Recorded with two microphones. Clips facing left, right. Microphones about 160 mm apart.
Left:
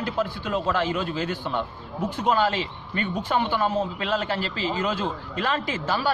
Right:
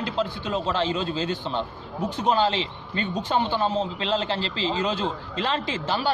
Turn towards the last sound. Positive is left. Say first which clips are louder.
# even
turn(degrees=-25)  # may be behind; listen again after turning